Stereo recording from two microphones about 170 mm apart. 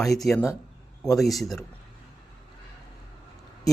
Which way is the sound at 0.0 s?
Centre (ahead or behind).